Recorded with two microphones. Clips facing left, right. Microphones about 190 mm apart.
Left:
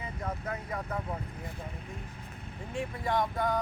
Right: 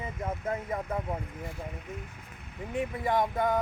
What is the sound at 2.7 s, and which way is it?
Speech, 20° right (ahead or behind).